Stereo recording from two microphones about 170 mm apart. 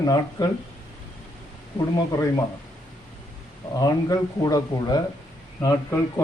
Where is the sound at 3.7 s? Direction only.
20° left (ahead or behind).